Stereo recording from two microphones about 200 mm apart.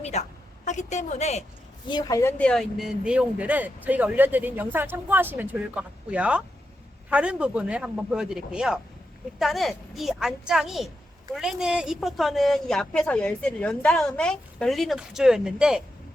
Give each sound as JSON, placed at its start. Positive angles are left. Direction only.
{"t": 0.0, "sound": "a woman's voice", "side_deg": 35}
{"t": 1.9, "sound": "speech", "side_deg": 20}
{"t": 2.4, "sound": "speech", "side_deg": 5}